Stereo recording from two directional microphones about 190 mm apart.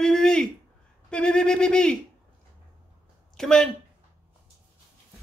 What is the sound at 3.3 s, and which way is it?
Speech, centre (ahead or behind).